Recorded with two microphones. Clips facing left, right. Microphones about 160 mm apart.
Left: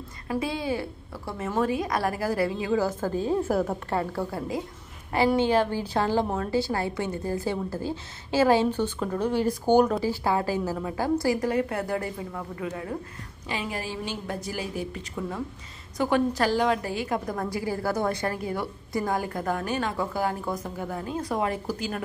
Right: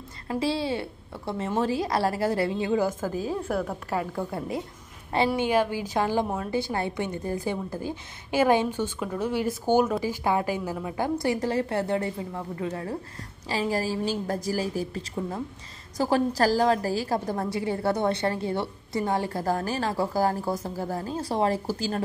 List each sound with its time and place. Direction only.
0.3 s a woman's voice: 30° right (ahead or behind)
3.0 s a woman's voice: 5° right (ahead or behind)
4.3 s a woman's voice: 25° right (ahead or behind)
5.4 s a woman's voice: 15° right (ahead or behind)
10.2 s a woman's voice: 20° right (ahead or behind)